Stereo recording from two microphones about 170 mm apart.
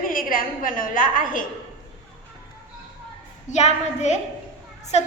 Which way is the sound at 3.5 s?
40° left (ahead or behind).